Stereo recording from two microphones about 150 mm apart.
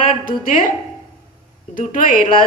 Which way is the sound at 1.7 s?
65° left (ahead or behind).